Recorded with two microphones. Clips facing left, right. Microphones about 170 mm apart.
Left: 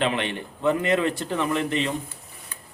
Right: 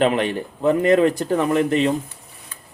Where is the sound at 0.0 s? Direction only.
40° right (ahead or behind).